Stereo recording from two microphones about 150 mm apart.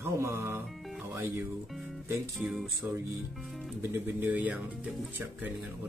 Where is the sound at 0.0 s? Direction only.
15° right (ahead or behind).